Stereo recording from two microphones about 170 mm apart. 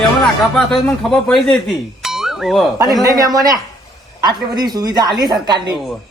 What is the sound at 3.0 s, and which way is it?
Speech, 20° right (ahead or behind).